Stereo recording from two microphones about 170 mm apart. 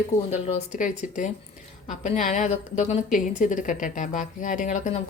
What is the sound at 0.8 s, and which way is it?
A woman's voice, 50° left (ahead or behind).